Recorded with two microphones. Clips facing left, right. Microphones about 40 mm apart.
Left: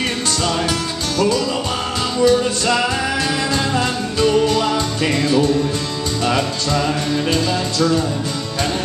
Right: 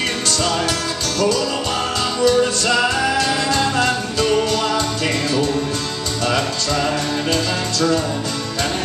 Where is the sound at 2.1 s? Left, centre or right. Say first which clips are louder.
Left 1 dB; centre.